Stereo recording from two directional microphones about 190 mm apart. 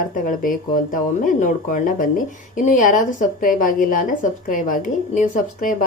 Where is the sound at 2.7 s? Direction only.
40° left (ahead or behind).